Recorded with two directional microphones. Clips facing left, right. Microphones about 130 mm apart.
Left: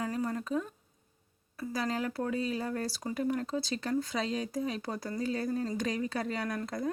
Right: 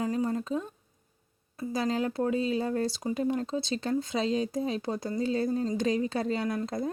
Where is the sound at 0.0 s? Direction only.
25° right (ahead or behind).